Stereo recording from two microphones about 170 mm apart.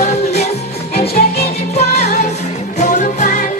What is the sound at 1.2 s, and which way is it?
Music, 55° left (ahead or behind).